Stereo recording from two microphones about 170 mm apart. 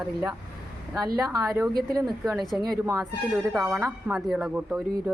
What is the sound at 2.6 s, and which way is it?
A woman's voice, 20° right (ahead or behind).